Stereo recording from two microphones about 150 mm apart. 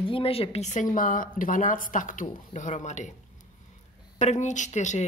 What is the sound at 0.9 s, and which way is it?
A woman's voice, 65° left (ahead or behind).